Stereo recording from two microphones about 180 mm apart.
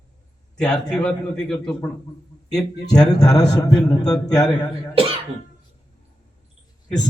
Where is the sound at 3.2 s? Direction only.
20° left (ahead or behind).